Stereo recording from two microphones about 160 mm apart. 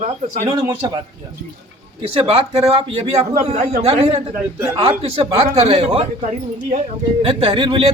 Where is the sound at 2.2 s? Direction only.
35° right (ahead or behind).